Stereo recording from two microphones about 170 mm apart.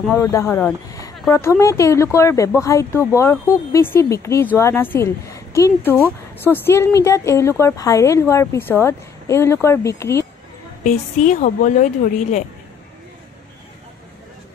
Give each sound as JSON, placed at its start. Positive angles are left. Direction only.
{"t": 0.1, "sound": "a woman's voice", "side_deg": 15}
{"t": 10.8, "sound": "a woman's voice", "side_deg": 45}